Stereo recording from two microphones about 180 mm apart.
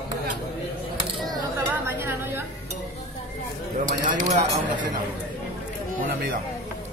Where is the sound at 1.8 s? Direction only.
10° right (ahead or behind).